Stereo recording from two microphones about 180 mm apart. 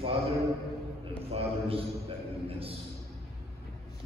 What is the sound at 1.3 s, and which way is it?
Speech, 35° right (ahead or behind).